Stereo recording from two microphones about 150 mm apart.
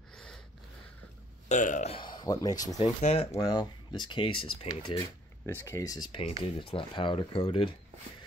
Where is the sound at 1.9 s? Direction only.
30° left (ahead or behind).